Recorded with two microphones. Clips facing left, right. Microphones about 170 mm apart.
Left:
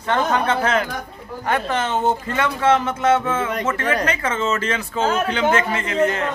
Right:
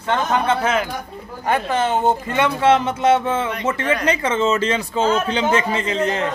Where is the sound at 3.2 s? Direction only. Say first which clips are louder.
Right 1 dB; 30° right (ahead or behind).